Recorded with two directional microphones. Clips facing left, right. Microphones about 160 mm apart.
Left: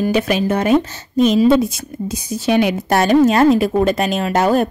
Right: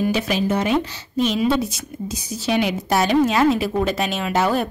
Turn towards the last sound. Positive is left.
turn(degrees=45)  # may be behind; listen again after turning